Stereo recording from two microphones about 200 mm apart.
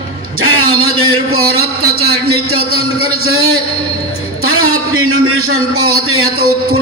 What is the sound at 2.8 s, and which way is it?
A man's voice, 90° right.